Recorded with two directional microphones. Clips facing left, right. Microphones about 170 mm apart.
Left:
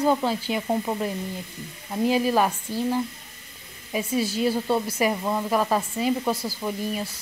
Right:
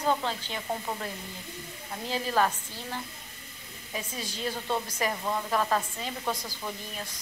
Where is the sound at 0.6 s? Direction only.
20° left (ahead or behind).